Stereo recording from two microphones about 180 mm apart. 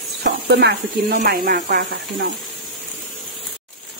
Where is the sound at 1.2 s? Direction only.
55° right (ahead or behind).